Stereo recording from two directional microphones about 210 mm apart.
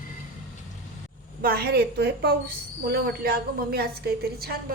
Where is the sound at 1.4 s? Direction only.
45° right (ahead or behind).